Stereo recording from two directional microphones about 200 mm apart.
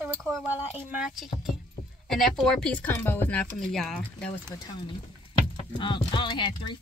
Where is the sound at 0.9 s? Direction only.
5° right (ahead or behind).